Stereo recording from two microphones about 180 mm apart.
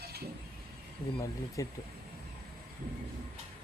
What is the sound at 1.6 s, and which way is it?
Speech, 20° left (ahead or behind).